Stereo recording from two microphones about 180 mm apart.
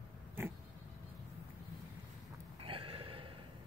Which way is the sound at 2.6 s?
30° right (ahead or behind).